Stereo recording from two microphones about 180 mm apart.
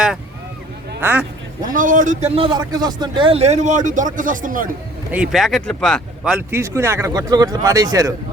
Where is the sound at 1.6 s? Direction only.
50° right (ahead or behind).